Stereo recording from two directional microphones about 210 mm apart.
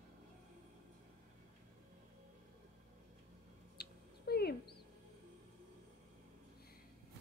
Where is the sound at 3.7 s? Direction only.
50° left (ahead or behind).